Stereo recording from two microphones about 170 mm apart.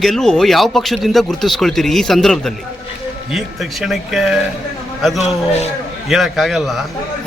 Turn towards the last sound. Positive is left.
turn(degrees=0)  # may be behind; listen again after turning